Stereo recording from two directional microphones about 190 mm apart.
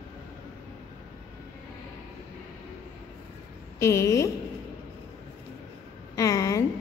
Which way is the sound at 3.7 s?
15° left (ahead or behind).